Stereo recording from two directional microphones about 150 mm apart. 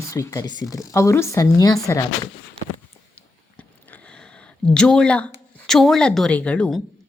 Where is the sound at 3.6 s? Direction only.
10° left (ahead or behind).